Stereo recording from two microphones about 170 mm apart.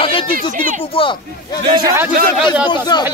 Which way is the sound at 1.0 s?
30° left (ahead or behind).